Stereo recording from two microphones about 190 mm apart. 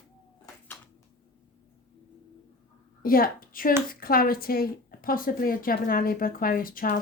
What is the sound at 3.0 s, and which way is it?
A woman's voice, 50° left (ahead or behind).